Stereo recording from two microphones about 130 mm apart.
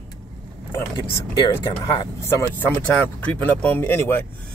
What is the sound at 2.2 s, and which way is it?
Speech, 20° left (ahead or behind).